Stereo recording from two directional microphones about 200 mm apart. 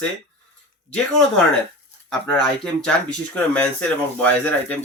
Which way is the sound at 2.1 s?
5° left (ahead or behind).